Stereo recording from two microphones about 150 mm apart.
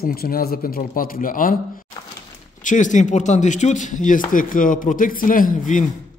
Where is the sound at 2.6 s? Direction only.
55° left (ahead or behind).